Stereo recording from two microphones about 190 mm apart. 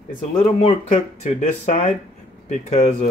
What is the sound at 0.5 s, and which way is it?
Speech, 35° left (ahead or behind).